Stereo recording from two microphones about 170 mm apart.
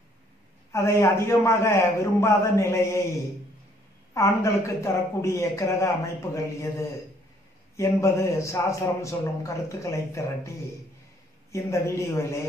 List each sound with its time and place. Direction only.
0.7 s a man's voice: 15° left (ahead or behind)
4.1 s a man's voice: 15° left (ahead or behind)
11.5 s a man's voice: 15° left (ahead or behind)